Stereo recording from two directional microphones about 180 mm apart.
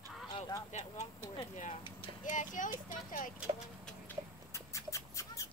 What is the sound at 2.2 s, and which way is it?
Speech, 45° left (ahead or behind).